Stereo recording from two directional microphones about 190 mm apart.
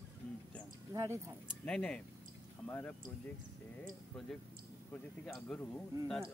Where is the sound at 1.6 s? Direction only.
5° left (ahead or behind).